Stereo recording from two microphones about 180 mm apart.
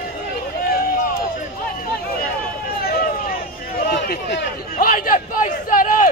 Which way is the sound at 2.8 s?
60° left (ahead or behind).